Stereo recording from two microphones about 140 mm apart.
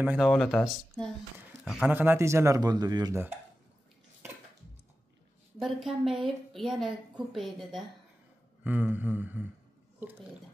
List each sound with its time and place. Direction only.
0.2 s a woman's voice: 5° left (ahead or behind)
1.6 s speech: 10° right (ahead or behind); by 3.2 s 30° right (ahead or behind)
5.6 s a woman's voice: centre (ahead or behind)
8.6 s a sound: 10° right (ahead or behind)